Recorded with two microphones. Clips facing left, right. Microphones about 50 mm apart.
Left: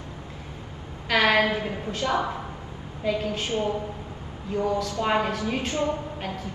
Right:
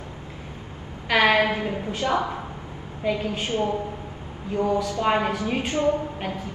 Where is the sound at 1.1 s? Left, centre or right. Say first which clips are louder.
Right 2 dB; right.